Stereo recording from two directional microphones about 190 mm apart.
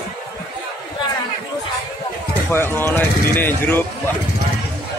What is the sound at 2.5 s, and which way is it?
Speech, 10° left (ahead or behind).